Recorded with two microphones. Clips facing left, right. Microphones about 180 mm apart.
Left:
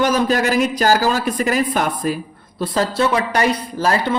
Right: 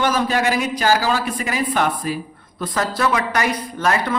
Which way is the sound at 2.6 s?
30° left (ahead or behind).